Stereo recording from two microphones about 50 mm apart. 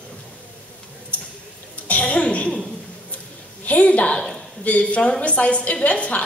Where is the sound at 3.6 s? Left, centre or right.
Left.